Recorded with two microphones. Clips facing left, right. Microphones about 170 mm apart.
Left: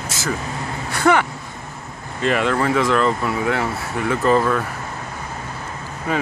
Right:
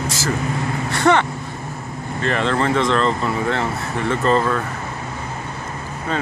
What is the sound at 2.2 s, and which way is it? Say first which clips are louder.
Speech: left 1 dB; 10° left (ahead or behind).